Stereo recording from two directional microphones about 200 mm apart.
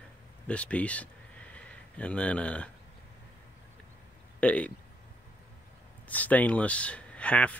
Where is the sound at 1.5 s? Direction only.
5° left (ahead or behind).